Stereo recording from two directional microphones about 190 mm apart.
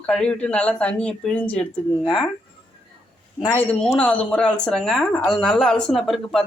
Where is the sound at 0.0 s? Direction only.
5° left (ahead or behind).